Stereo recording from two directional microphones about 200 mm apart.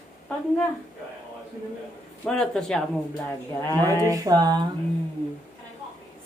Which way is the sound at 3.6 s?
15° left (ahead or behind).